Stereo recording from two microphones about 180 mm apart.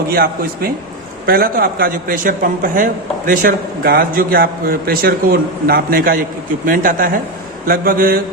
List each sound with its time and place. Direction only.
0.1 s a man's voice: 55° right (ahead or behind)